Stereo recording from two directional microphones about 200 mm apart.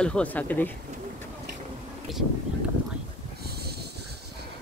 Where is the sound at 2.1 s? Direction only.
Centre (ahead or behind).